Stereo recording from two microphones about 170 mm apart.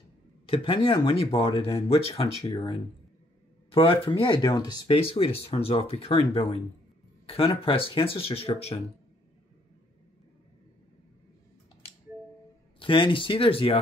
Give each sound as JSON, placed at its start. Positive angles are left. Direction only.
{"t": 0.5, "sound": "speech", "side_deg": 30}
{"t": 12.7, "sound": "speech", "side_deg": 30}